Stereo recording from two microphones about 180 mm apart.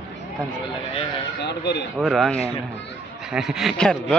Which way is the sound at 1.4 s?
70° left (ahead or behind).